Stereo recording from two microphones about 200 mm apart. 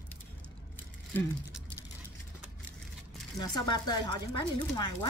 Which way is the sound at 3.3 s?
20° left (ahead or behind).